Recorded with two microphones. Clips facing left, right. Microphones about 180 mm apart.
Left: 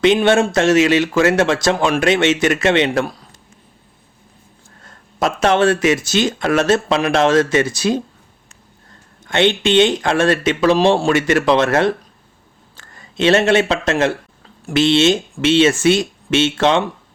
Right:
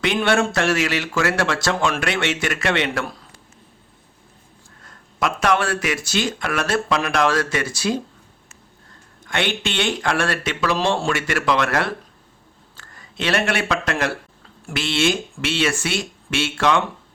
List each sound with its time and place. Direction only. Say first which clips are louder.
0.0 s speech: left 6 dB; 20° left (ahead or behind)
5.2 s speech: left 6 dB; 25° left (ahead or behind)
9.2 s speech: left 8 dB; 25° left (ahead or behind)